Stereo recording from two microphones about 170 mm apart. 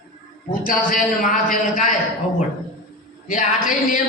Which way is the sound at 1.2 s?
50° left (ahead or behind).